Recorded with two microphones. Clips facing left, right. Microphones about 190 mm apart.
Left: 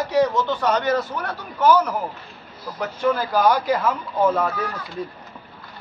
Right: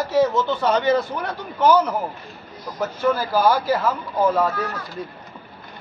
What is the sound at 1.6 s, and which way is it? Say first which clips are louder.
Speech: even; 10° left (ahead or behind).